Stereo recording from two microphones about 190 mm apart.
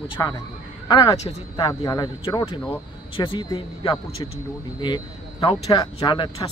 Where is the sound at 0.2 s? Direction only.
15° left (ahead or behind).